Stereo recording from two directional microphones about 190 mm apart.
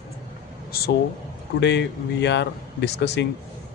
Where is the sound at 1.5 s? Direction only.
65° left (ahead or behind).